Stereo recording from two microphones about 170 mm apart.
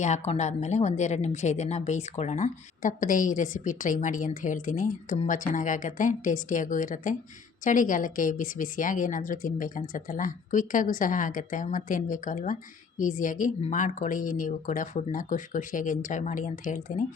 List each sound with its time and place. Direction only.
0.0 s a woman's voice: 40° left (ahead or behind)